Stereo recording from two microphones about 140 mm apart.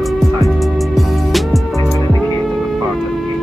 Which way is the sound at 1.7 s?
25° left (ahead or behind).